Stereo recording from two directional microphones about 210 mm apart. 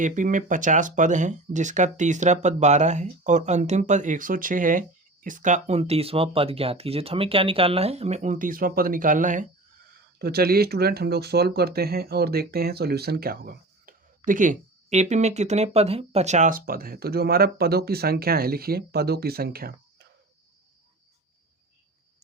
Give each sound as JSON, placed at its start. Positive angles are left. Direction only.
{"t": 0.0, "sound": "speech", "side_deg": -40}
{"t": 10.2, "sound": "speech", "side_deg": -45}